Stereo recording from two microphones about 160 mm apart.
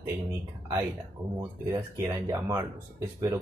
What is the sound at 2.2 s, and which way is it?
Speech, 25° right (ahead or behind).